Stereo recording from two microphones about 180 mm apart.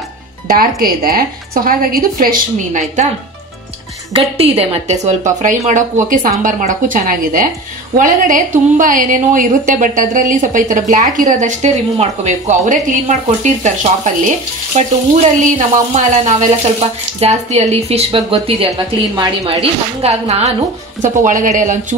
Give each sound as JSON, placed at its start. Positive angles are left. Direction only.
{"t": 0.5, "sound": "a woman's voice", "side_deg": -55}
{"t": 4.4, "sound": "a woman's voice", "side_deg": -35}
{"t": 18.7, "sound": "a woman's voice", "side_deg": -20}
{"t": 19.4, "sound": "a woman's voice", "side_deg": -35}